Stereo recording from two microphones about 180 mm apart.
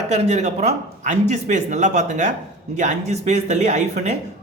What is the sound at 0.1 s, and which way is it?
A man's voice, 40° right (ahead or behind).